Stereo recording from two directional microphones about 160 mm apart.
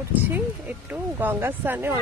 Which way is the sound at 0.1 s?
10° right (ahead or behind).